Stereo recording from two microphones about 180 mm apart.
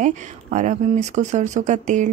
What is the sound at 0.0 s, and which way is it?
Speech, 45° right (ahead or behind).